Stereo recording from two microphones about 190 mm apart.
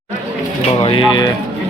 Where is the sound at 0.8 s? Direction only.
30° left (ahead or behind).